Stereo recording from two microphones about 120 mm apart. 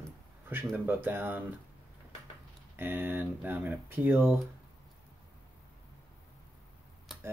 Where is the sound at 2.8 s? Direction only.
15° right (ahead or behind).